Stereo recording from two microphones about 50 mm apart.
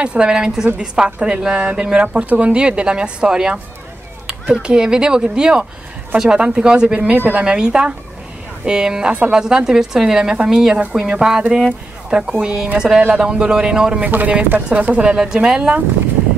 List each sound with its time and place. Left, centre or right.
0.0 s a woman's voice: centre
14.0 s speech: right